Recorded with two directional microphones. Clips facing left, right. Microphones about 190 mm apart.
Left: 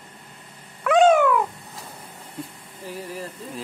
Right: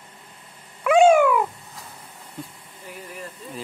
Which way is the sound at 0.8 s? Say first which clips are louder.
Right 1 dB; 10° right (ahead or behind).